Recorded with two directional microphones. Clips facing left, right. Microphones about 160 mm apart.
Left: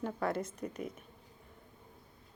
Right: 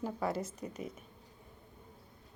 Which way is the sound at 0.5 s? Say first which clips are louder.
Left 2 dB; 55° left (ahead or behind).